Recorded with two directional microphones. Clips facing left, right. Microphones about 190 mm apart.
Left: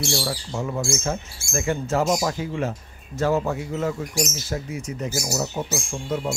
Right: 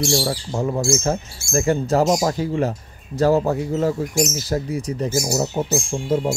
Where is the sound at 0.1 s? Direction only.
35° right (ahead or behind).